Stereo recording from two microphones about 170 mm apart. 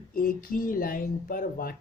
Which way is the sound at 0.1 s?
55° left (ahead or behind).